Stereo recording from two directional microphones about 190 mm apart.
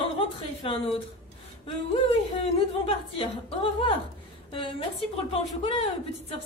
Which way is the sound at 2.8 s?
30° left (ahead or behind).